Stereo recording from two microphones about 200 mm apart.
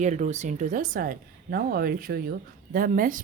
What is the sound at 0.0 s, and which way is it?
A woman's voice, 35° right (ahead or behind).